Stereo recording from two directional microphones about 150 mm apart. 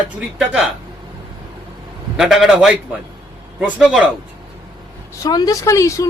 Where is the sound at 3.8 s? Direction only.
5° right (ahead or behind).